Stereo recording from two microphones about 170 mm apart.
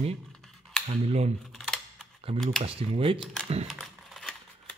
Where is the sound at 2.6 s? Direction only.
35° right (ahead or behind).